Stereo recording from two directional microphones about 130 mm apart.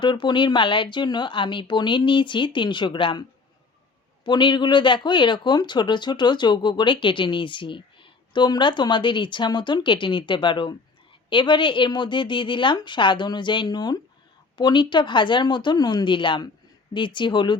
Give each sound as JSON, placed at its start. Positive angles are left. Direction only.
{"t": 0.0, "sound": "speech", "side_deg": 35}
{"t": 4.3, "sound": "speech", "side_deg": 35}